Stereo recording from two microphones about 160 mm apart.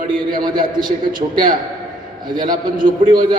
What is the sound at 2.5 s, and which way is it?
Speech, 60° right (ahead or behind).